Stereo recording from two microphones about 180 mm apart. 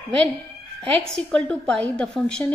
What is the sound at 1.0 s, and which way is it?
A woman's voice, centre (ahead or behind).